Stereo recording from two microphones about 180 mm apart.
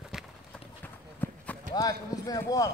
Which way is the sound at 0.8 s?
10° left (ahead or behind).